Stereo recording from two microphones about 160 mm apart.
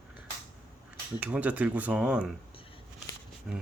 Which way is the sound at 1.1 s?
10° right (ahead or behind).